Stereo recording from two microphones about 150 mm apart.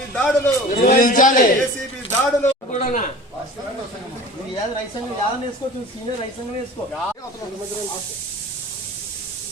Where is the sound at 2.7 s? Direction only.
55° left (ahead or behind).